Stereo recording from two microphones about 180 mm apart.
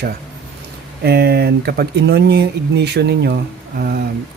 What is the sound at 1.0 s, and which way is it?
Speech, 60° right (ahead or behind).